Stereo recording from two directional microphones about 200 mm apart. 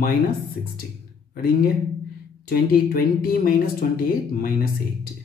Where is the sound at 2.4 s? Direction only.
50° left (ahead or behind).